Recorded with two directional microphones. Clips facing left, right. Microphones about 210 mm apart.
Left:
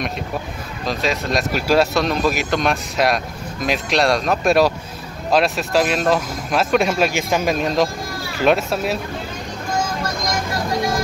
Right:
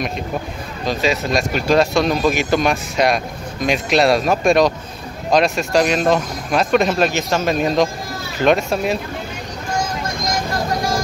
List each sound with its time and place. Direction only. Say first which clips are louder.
0.8 s speech: right 3 dB; centre (ahead or behind)
7.5 s speech: right 2 dB; centre (ahead or behind)